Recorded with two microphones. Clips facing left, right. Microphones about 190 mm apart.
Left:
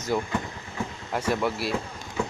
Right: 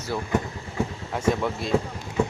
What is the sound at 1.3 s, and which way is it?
Speech, 5° left (ahead or behind).